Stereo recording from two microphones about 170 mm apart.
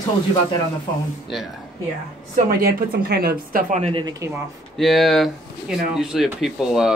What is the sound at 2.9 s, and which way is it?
Speech, 65° right (ahead or behind).